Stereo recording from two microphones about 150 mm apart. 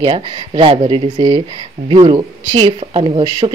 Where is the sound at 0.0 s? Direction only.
35° right (ahead or behind).